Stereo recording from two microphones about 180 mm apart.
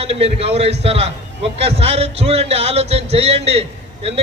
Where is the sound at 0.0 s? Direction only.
35° right (ahead or behind).